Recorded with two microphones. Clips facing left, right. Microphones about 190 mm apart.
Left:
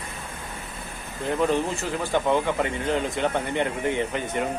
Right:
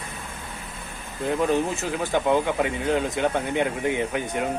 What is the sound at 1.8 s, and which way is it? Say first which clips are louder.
Speech: right 1 dB; 10° right (ahead or behind).